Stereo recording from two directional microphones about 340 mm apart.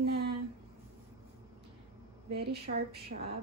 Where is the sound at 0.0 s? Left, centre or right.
Right.